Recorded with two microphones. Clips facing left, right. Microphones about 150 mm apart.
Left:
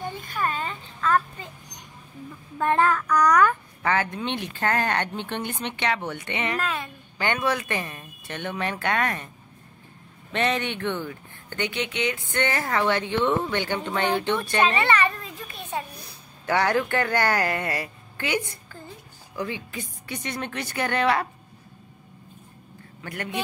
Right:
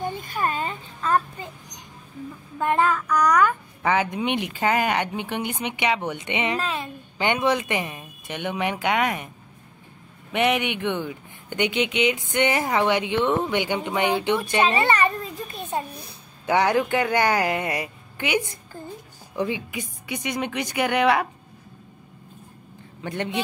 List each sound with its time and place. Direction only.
0.3 s a sound: 30° right (ahead or behind)
2.6 s a woman's voice: 5° right (ahead or behind)
10.3 s a woman's voice: 15° right (ahead or behind)
16.0 s a woman's voice: 15° right (ahead or behind)
23.0 s a man's voice: 20° right (ahead or behind)